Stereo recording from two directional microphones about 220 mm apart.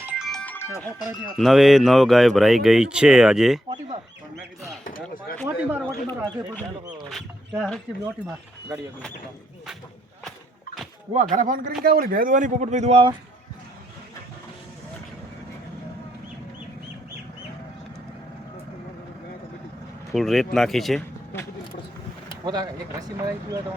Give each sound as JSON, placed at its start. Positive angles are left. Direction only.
{"t": 0.0, "sound": "music", "side_deg": -5}
{"t": 1.4, "sound": "speech", "side_deg": 0}
{"t": 4.8, "sound": "speech", "side_deg": 40}
{"t": 5.5, "sound": "speech", "side_deg": -10}
{"t": 7.1, "sound": "speech", "side_deg": 0}
{"t": 11.1, "sound": "speech", "side_deg": -30}
{"t": 20.1, "sound": "speech", "side_deg": 0}
{"t": 22.4, "sound": "speech", "side_deg": -20}